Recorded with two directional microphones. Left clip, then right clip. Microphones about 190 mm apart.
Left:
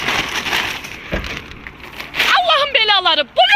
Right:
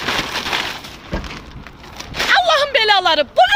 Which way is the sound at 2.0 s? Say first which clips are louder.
Left 1 dB; 30° right (ahead or behind).